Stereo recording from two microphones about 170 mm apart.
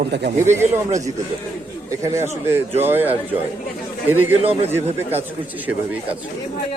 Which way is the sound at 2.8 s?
10° right (ahead or behind).